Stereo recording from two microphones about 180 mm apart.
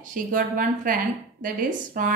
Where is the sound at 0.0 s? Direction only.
50° right (ahead or behind).